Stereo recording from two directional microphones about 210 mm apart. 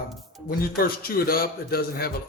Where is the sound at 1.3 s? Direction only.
45° left (ahead or behind).